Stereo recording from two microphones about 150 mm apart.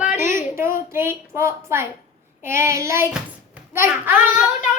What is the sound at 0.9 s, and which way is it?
A child's voice, 15° right (ahead or behind).